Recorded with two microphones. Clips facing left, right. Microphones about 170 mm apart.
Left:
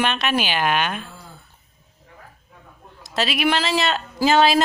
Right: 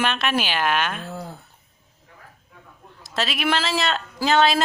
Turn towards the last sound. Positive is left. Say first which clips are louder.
# left 2 dB
turn(degrees=5)  # may be behind; listen again after turning